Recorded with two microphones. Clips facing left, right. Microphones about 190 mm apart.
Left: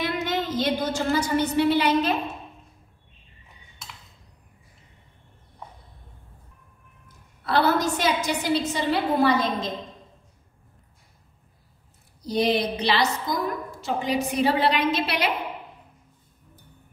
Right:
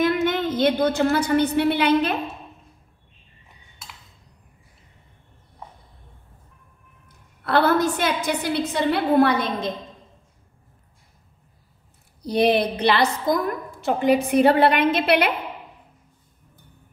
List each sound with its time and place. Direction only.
0.0 s a woman's voice: 55° right (ahead or behind)
7.4 s a woman's voice: 55° right (ahead or behind)
12.2 s a woman's voice: 60° right (ahead or behind)